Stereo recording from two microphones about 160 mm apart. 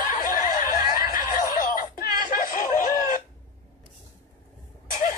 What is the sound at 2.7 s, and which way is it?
Chicken, 55° left (ahead or behind).